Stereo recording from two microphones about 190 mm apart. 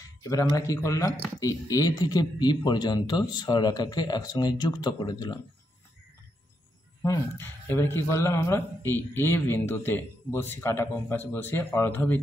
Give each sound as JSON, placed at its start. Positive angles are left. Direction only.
{"t": 0.0, "sound": "speech", "side_deg": 20}
{"t": 7.0, "sound": "a man's voice", "side_deg": 10}